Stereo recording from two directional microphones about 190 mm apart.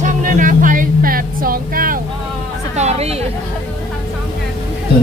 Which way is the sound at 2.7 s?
35° right (ahead or behind).